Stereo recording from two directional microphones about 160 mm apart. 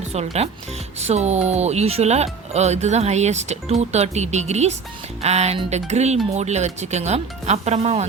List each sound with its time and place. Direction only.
0.1 s speech: 40° right (ahead or behind)